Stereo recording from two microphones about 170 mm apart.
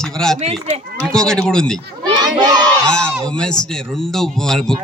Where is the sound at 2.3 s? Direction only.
25° right (ahead or behind).